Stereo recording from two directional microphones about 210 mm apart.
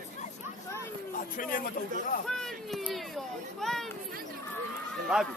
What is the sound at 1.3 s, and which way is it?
Speech, 40° left (ahead or behind).